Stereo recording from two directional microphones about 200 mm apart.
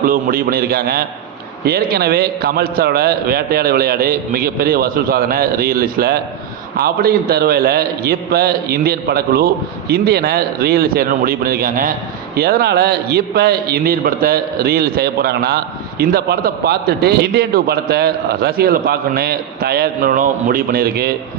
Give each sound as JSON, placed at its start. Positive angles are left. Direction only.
{"t": 0.0, "sound": "a man's voice", "side_deg": -45}